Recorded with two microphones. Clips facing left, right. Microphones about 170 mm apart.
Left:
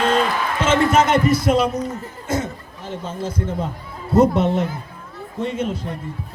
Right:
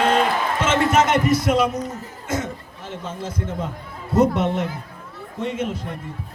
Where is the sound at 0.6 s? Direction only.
30° left (ahead or behind).